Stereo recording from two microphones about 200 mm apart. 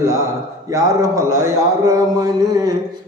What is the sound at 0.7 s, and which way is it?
A man's voice, 15° right (ahead or behind).